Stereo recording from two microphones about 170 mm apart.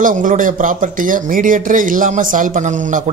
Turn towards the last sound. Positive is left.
turn(degrees=-50)  # may be behind; listen again after turning